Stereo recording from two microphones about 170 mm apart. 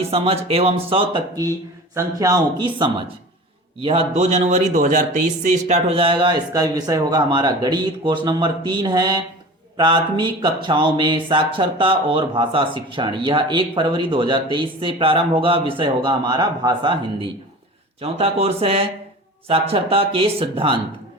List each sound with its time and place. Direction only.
0.1 s speech: 35° right (ahead or behind)